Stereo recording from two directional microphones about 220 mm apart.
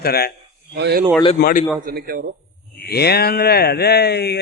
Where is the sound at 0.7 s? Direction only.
50° right (ahead or behind).